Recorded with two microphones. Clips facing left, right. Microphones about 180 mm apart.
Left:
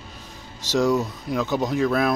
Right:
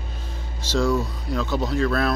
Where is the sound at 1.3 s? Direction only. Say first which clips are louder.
Left 1 dB; 15° left (ahead or behind).